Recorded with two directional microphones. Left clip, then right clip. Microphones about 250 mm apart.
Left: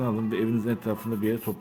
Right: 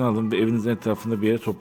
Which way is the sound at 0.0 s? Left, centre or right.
Right.